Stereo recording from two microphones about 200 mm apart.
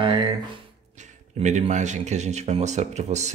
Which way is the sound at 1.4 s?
35° right (ahead or behind).